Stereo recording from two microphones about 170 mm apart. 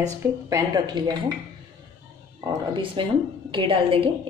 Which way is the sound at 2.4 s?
30° right (ahead or behind).